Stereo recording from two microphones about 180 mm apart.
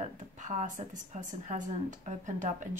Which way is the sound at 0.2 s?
45° right (ahead or behind).